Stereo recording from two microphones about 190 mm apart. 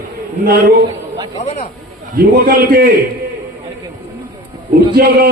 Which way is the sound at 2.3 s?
50° right (ahead or behind).